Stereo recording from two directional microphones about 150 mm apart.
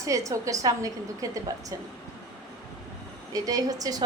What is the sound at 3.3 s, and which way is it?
Speech, 25° right (ahead or behind).